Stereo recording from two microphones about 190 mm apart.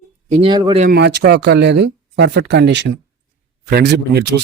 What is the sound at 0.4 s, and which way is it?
Speech, 30° right (ahead or behind).